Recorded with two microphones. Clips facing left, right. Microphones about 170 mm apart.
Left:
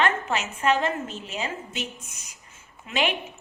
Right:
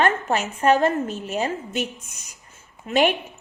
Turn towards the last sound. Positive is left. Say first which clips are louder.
# right 7 dB
turn(degrees=-45)  # may be behind; listen again after turning